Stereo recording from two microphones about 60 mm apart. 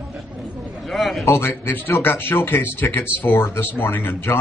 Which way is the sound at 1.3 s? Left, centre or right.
Left.